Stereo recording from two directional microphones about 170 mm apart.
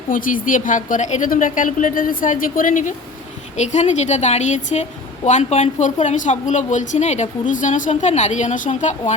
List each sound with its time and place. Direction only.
0.1 s a woman's voice: 55° left (ahead or behind)